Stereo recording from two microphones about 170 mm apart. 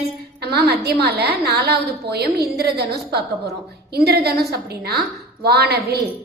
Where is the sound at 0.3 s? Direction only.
70° right (ahead or behind).